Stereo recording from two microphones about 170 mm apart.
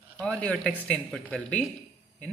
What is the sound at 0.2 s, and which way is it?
A man's voice, 5° left (ahead or behind).